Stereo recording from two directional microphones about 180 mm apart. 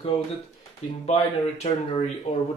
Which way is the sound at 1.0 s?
40° left (ahead or behind).